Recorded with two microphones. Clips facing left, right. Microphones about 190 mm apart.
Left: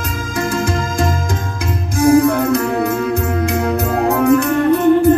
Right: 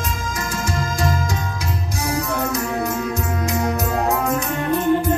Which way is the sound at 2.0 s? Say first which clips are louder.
Left 13 dB; 50° left (ahead or behind).